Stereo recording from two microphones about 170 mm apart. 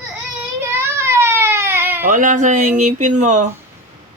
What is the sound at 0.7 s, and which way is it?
Baby cry, 15° right (ahead or behind).